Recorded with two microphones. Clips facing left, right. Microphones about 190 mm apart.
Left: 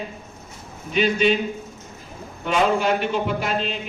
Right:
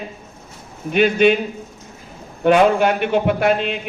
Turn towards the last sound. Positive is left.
turn(degrees=-60)  # may be behind; listen again after turning